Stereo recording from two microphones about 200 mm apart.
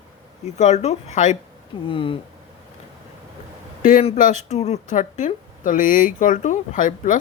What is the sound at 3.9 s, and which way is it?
A woman's voice, 40° left (ahead or behind).